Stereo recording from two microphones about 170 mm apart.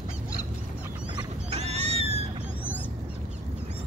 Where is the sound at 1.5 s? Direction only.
40° right (ahead or behind).